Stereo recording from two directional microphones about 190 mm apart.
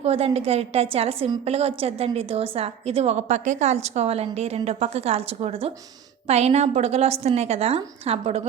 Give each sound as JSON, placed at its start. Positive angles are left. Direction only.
{"t": 0.0, "sound": "a woman's voice", "side_deg": -30}